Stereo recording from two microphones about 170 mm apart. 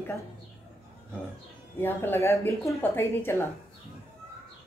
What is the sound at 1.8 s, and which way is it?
A woman's voice, 15° left (ahead or behind).